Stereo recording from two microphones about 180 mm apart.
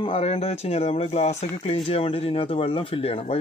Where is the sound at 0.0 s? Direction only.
30° left (ahead or behind).